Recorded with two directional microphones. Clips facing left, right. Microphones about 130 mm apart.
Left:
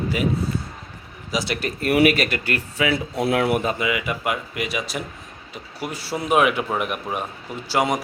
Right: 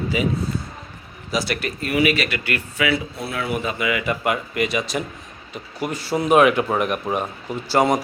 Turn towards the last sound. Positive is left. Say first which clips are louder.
# right 3 dB
turn(degrees=5)  # may be behind; listen again after turning